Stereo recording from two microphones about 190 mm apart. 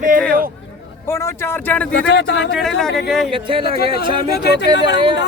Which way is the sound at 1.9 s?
75° left (ahead or behind).